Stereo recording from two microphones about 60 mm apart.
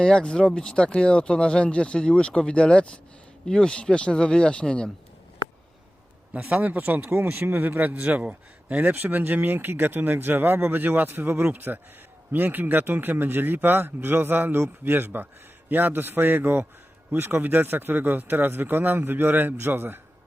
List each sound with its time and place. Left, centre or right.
0.0 s speech: centre
6.5 s speech: right